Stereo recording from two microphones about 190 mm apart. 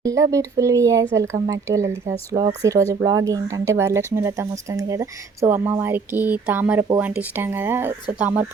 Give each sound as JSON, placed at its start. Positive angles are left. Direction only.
{"t": 0.0, "sound": "speech", "side_deg": -15}